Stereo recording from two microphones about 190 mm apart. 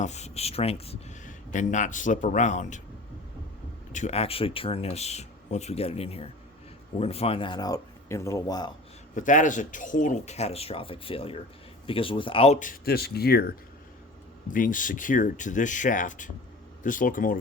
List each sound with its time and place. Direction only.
0.0 s speech: 35° left (ahead or behind)
3.9 s speech: 35° left (ahead or behind); by 8.7 s 20° left (ahead or behind)
9.1 s speech: 40° left (ahead or behind)
14.4 s speech: 45° left (ahead or behind)